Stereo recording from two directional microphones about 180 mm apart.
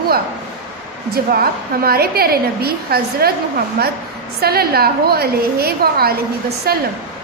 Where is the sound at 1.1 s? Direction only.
55° right (ahead or behind).